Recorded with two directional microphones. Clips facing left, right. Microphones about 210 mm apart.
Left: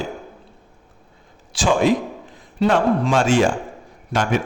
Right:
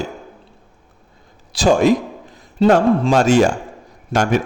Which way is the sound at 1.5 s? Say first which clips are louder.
Right 4 dB; 40° right (ahead or behind).